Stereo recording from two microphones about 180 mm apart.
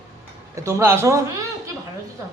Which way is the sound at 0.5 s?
15° right (ahead or behind).